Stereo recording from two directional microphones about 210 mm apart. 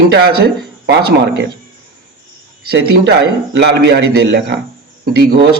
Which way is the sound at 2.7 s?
55° right (ahead or behind).